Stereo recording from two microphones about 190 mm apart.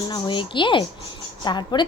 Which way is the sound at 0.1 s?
25° left (ahead or behind).